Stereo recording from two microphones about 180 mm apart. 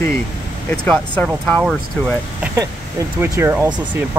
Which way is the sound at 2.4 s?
15° right (ahead or behind).